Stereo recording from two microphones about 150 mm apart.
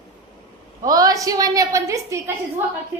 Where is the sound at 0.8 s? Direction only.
25° right (ahead or behind).